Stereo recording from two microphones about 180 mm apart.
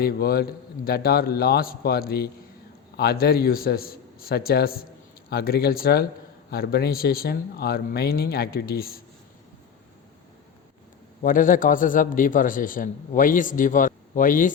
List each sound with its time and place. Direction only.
0.0 s speech: 60° left (ahead or behind)
11.2 s a man's voice: 50° left (ahead or behind)